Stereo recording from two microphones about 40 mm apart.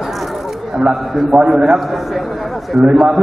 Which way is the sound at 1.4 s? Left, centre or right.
Centre.